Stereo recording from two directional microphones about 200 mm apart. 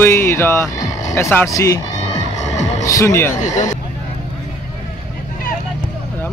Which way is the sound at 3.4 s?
35° left (ahead or behind).